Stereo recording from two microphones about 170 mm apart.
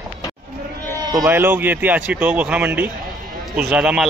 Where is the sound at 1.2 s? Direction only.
15° right (ahead or behind).